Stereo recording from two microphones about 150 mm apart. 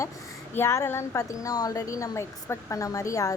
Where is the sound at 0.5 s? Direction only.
15° left (ahead or behind).